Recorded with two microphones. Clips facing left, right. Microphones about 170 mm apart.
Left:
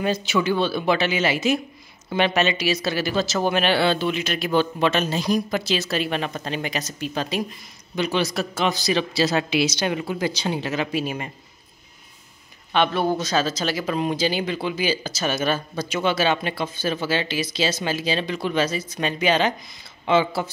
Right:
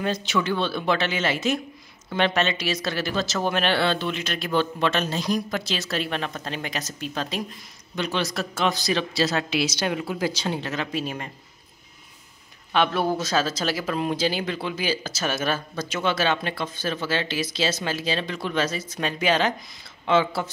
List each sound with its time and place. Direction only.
0.0 s speech: 5° left (ahead or behind)
12.7 s speech: centre (ahead or behind)